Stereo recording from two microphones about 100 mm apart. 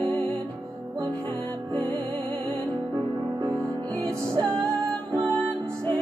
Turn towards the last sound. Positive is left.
turn(degrees=-35)  # may be behind; listen again after turning